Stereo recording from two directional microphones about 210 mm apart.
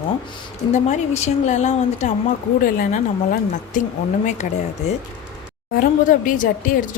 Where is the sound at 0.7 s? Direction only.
35° left (ahead or behind).